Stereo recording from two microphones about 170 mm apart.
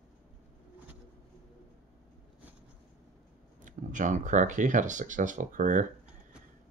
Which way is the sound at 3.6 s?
50° right (ahead or behind).